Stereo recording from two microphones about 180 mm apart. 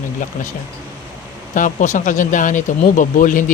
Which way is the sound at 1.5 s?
45° left (ahead or behind).